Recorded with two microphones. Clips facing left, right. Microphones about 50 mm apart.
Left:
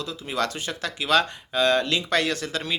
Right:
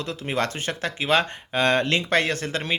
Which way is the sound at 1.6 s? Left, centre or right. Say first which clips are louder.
Right 1 dB; right.